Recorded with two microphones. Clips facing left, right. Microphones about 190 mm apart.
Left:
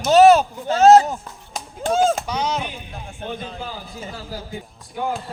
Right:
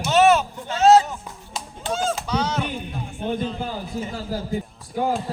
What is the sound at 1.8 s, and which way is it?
Chop, 45° left (ahead or behind).